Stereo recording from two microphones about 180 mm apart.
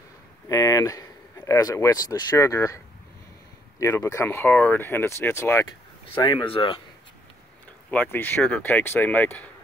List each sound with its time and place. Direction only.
0.5 s speech: 20° left (ahead or behind)
3.8 s speech: 15° left (ahead or behind)
6.2 s speech: 25° left (ahead or behind)
7.9 s speech: 10° left (ahead or behind)